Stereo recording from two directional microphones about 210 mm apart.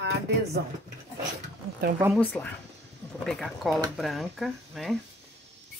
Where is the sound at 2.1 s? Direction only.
5° left (ahead or behind).